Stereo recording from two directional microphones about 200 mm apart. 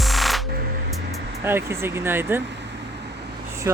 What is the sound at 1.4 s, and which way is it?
Speech, 10° right (ahead or behind).